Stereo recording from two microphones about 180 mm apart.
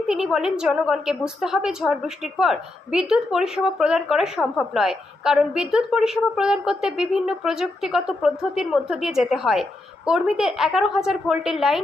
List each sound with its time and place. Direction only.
0.1 s a woman's voice: 5° right (ahead or behind)